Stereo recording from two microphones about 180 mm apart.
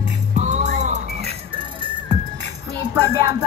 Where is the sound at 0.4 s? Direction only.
40° right (ahead or behind).